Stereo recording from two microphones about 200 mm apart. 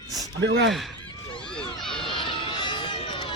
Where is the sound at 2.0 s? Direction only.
25° left (ahead or behind).